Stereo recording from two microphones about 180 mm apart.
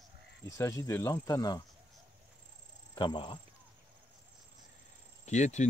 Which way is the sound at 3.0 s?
25° left (ahead or behind).